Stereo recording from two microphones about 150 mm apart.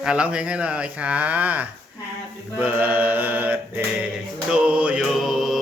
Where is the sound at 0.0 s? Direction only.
5° right (ahead or behind).